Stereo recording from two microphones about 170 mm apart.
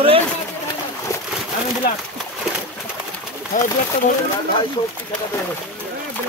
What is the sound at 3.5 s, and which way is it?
Speech, 50° left (ahead or behind).